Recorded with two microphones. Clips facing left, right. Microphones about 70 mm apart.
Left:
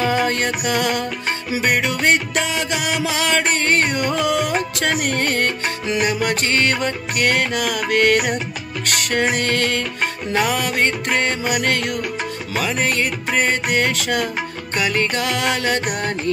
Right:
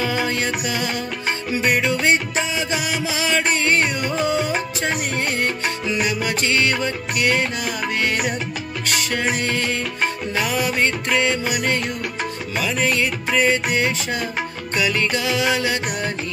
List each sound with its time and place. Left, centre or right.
0.0 s music: left
3.0 s music: left
3.9 s music: left
6.2 s music: left
14.8 s music: left